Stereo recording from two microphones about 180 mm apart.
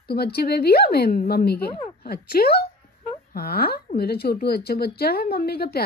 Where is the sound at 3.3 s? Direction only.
60° left (ahead or behind).